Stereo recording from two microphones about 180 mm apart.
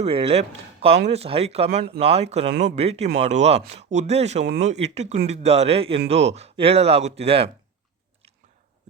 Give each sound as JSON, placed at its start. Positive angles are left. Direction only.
{"t": 0.0, "sound": "speech", "side_deg": -30}